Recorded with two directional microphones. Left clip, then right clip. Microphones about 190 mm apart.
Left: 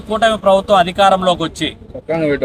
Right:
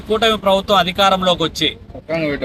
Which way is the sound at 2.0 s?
50° left (ahead or behind).